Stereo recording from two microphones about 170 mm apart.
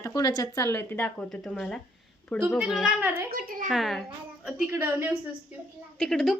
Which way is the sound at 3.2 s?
60° right (ahead or behind).